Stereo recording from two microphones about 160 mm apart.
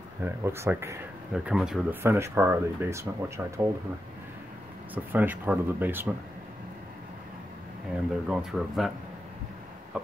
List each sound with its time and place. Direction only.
0.2 s speech: 15° right (ahead or behind)
1.3 s speech: 5° right (ahead or behind)
2.0 s speech: 15° right (ahead or behind)
4.9 s speech: 10° right (ahead or behind)
8.3 s speech: 5° right (ahead or behind)
9.9 s a sound: 5° right (ahead or behind)